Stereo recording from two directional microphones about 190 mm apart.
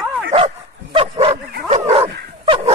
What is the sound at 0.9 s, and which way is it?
Bow-wow, 35° right (ahead or behind).